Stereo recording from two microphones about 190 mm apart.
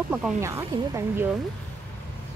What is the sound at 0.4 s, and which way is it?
Speech, 15° right (ahead or behind).